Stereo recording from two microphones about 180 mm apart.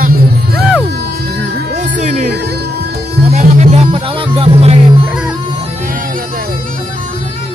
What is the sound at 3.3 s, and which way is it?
Music, 40° right (ahead or behind).